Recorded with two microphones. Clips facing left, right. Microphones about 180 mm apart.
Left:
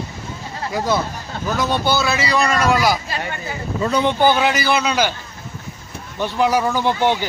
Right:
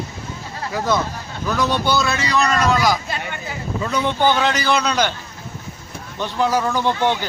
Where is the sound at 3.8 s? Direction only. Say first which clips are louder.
Left 4 dB; 35° left (ahead or behind).